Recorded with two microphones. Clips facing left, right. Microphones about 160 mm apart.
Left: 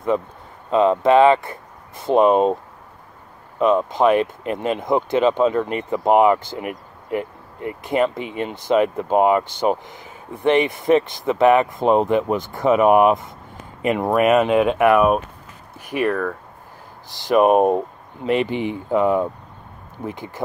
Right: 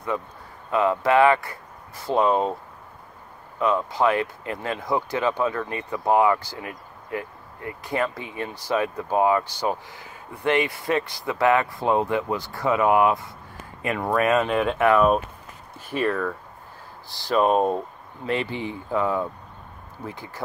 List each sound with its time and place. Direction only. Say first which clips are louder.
0.7 s speech: left 6 dB; 25° left (ahead or behind)
3.5 s speech: left 5 dB; 20° left (ahead or behind)